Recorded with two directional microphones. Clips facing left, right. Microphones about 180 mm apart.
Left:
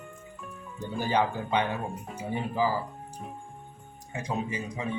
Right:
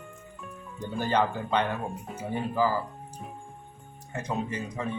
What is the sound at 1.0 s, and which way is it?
Speech, 10° left (ahead or behind).